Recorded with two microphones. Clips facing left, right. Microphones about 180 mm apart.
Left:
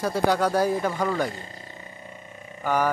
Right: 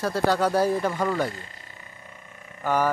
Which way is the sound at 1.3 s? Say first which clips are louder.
Left 3 dB; 30° left (ahead or behind).